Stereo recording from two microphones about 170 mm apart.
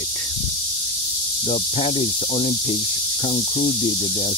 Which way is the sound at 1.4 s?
40° left (ahead or behind).